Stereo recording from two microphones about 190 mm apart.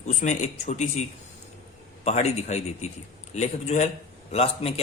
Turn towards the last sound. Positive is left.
turn(degrees=30)  # may be behind; listen again after turning